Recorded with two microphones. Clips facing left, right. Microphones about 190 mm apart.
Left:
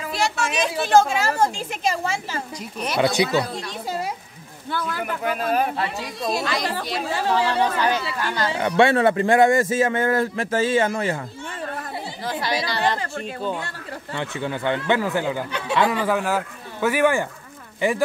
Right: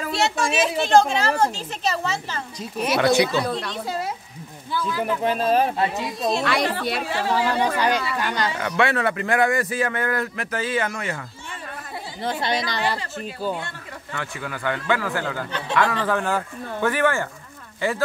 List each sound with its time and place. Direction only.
0.1 s speech: 25° right (ahead or behind)
0.8 s a woman's voice: 5° left (ahead or behind)
3.4 s speech: 65° right (ahead or behind)
5.0 s speech: 30° right (ahead or behind)
6.4 s speech: 65° right (ahead or behind)
7.3 s speech: 10° right (ahead or behind)
8.5 s a man's voice: 30° left (ahead or behind)
12.3 s speech: 25° right (ahead or behind)
13.2 s speech: 5° right (ahead or behind)
14.1 s a man's voice: 25° left (ahead or behind)